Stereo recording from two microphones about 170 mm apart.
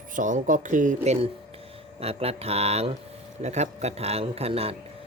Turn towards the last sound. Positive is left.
turn(degrees=-35)  # may be behind; listen again after turning